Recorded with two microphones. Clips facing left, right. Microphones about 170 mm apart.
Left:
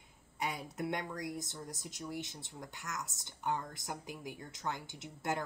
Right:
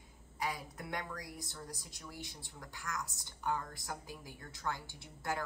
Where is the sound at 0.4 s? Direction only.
25° left (ahead or behind).